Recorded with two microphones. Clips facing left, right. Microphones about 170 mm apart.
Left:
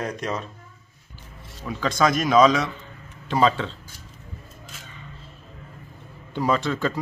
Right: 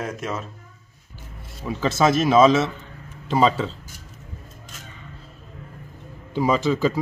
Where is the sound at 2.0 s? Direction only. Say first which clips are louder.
Right 3 dB; 25° right (ahead or behind).